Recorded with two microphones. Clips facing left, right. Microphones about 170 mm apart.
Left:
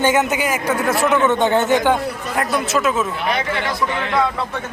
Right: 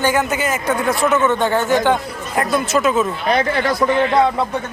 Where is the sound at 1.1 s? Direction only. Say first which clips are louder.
Left 2 dB; 20° left (ahead or behind).